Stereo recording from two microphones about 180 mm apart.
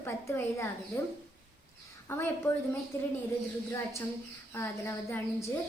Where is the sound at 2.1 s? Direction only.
15° left (ahead or behind).